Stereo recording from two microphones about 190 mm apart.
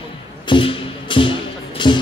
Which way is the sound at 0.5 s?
25° left (ahead or behind).